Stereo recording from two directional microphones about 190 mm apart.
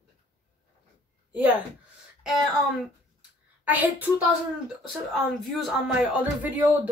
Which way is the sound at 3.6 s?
10° right (ahead or behind).